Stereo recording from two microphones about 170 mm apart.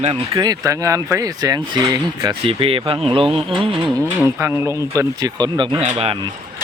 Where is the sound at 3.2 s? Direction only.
Centre (ahead or behind).